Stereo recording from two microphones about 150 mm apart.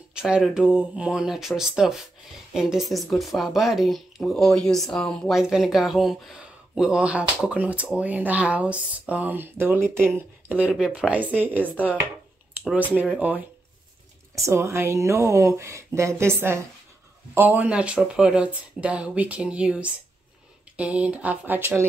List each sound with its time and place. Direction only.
0.2 s speech: 5° right (ahead or behind)
12.7 s speech: 10° right (ahead or behind)